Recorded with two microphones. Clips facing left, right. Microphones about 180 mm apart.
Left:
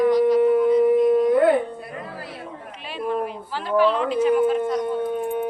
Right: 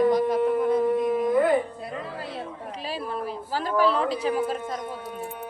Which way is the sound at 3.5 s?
40° right (ahead or behind).